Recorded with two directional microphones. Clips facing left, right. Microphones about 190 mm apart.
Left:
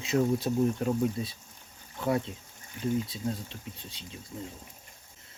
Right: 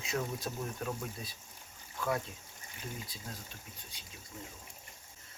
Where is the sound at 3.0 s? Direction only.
25° left (ahead or behind).